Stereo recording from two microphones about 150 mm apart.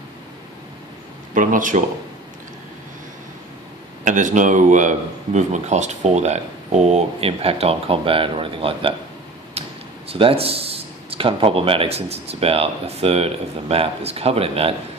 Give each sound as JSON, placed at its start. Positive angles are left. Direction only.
{"t": 1.3, "sound": "speech", "side_deg": -60}
{"t": 4.0, "sound": "a man's voice", "side_deg": -55}